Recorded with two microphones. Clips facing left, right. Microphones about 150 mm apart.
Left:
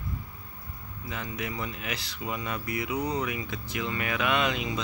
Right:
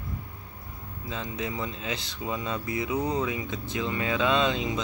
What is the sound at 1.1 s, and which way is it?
Speech, 25° right (ahead or behind).